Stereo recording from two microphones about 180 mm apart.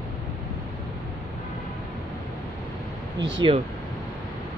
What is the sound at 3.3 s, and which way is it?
Speech, 30° right (ahead or behind).